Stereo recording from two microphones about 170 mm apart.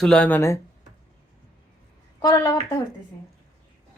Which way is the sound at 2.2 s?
25° left (ahead or behind).